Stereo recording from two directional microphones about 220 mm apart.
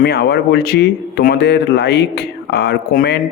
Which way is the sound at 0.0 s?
45° left (ahead or behind).